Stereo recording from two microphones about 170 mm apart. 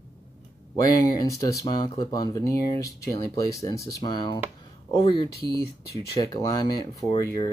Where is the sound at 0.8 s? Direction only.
20° left (ahead or behind).